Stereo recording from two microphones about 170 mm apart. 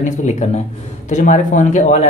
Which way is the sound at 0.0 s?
45° left (ahead or behind).